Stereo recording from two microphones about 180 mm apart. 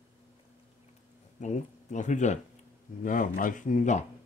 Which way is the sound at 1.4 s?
40° left (ahead or behind).